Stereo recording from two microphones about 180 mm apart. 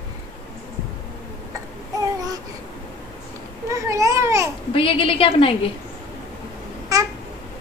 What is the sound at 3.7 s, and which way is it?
Babbling, 15° right (ahead or behind).